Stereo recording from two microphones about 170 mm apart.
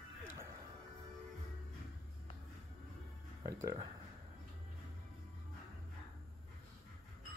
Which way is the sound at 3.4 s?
15° right (ahead or behind).